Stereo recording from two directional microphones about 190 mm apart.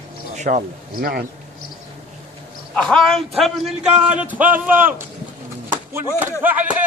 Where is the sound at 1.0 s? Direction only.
55° right (ahead or behind).